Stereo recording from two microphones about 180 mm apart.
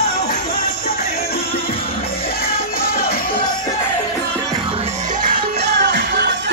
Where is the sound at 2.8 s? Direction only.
55° left (ahead or behind).